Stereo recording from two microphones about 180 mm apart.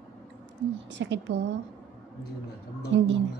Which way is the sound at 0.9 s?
85° right.